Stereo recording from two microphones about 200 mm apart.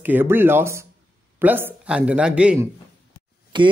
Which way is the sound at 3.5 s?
25° right (ahead or behind).